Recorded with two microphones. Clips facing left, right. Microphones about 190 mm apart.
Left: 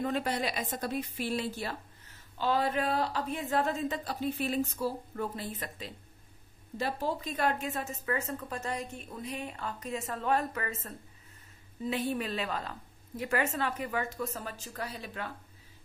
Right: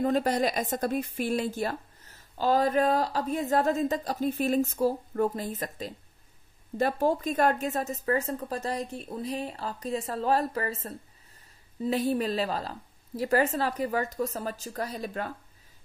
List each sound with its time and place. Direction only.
0.0 s a woman's voice: 40° right (ahead or behind)